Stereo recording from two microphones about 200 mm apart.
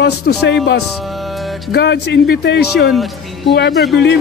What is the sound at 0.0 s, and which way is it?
Speech, 90° left.